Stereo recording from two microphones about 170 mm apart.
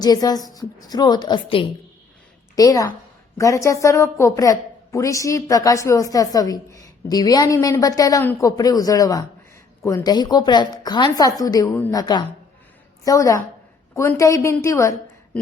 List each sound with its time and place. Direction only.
0.0 s a woman's voice: 20° left (ahead or behind)